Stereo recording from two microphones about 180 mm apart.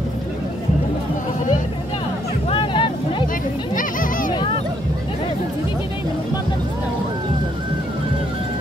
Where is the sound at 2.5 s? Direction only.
30° left (ahead or behind).